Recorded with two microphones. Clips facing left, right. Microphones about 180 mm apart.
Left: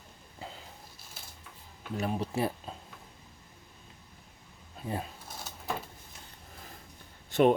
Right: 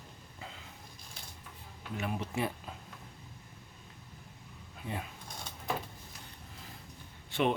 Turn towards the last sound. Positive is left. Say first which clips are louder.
# left 7 dB
turn(degrees=45)  # may be behind; listen again after turning